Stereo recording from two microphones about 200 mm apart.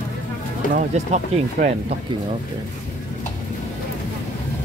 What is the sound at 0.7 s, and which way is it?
Speech, 40° right (ahead or behind).